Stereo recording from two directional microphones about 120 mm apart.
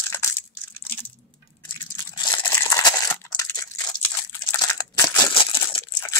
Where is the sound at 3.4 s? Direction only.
25° left (ahead or behind).